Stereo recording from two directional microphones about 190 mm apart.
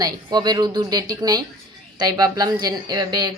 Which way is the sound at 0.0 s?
20° right (ahead or behind).